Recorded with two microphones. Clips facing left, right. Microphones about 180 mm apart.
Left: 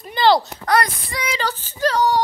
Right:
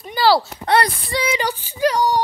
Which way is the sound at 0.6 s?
30° right (ahead or behind).